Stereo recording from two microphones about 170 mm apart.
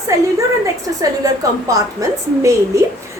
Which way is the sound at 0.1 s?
20° right (ahead or behind).